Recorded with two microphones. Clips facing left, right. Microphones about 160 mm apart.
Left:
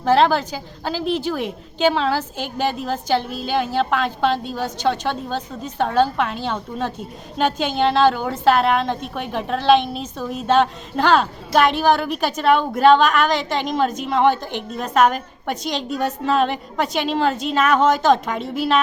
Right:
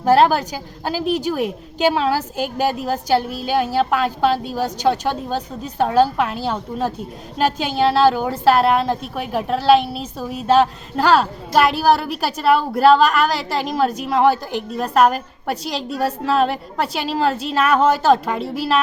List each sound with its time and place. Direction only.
0.0 s a woman's voice: 10° right (ahead or behind)
15.9 s a woman's voice: 35° right (ahead or behind)
16.2 s a woman's voice: centre (ahead or behind)